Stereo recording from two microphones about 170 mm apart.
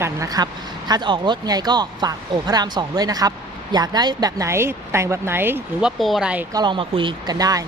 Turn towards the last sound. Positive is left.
turn(degrees=-20)  # may be behind; listen again after turning